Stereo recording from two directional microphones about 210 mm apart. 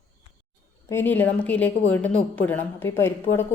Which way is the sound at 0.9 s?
10° left (ahead or behind).